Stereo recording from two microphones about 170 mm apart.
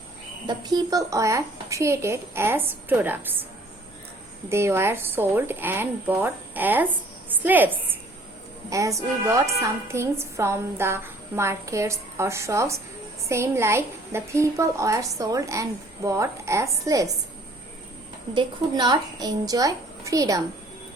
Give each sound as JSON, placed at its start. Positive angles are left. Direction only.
{"t": 0.4, "sound": "a woman's voice", "side_deg": -25}
{"t": 4.4, "sound": "a woman's voice", "side_deg": -15}
{"t": 18.3, "sound": "a child's voice", "side_deg": -25}